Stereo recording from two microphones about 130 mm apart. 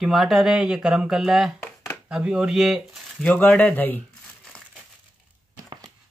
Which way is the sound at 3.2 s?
10° left (ahead or behind).